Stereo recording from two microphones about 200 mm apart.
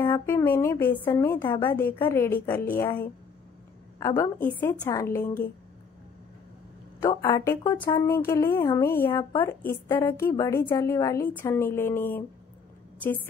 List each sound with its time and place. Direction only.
0.0 s a woman's voice: 15° left (ahead or behind)
7.0 s a woman's voice: 15° left (ahead or behind)